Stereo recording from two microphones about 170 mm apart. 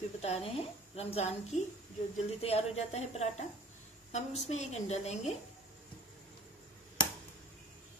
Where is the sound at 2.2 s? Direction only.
35° left (ahead or behind).